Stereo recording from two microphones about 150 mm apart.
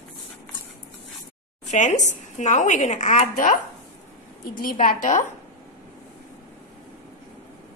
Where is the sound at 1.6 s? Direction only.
50° left (ahead or behind).